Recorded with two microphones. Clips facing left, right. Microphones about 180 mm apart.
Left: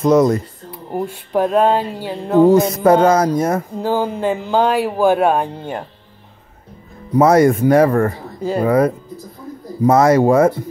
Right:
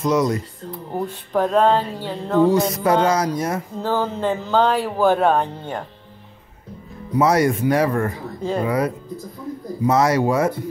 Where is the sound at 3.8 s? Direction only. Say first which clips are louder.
Even; 10° left (ahead or behind).